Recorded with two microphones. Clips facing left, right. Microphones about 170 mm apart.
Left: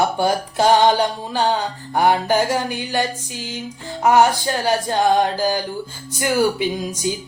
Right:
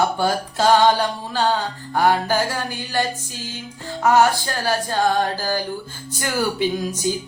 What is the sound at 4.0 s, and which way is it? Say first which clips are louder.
Music: left 1 dB; 15° left (ahead or behind).